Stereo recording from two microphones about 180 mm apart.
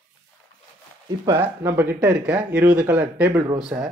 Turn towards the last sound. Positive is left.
turn(degrees=-5)  # may be behind; listen again after turning